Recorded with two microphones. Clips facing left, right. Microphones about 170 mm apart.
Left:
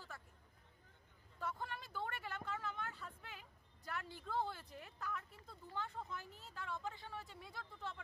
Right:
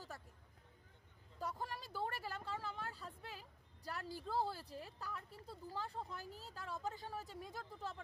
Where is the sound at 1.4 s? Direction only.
35° right (ahead or behind).